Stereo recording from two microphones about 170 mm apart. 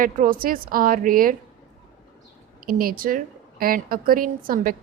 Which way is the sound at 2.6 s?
60° right (ahead or behind).